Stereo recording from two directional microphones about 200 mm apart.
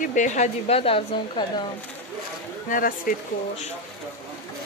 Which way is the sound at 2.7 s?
45° left (ahead or behind).